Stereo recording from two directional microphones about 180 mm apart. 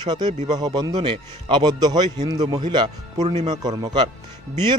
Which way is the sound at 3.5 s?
20° right (ahead or behind).